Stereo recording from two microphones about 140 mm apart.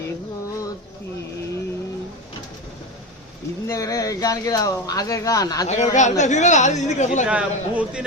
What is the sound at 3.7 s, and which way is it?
Mantra, 25° left (ahead or behind).